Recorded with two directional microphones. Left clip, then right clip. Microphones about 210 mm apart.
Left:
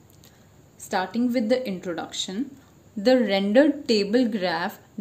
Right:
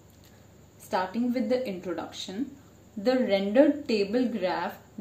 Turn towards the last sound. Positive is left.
turn(degrees=45)  # may be behind; listen again after turning